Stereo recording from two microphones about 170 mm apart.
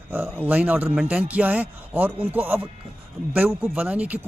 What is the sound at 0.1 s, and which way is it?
Speech, 10° right (ahead or behind).